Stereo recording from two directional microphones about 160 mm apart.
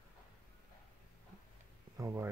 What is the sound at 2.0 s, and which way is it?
Speech, 15° right (ahead or behind).